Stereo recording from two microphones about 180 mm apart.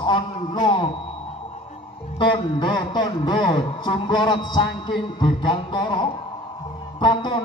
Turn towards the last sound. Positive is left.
turn(degrees=25)  # may be behind; listen again after turning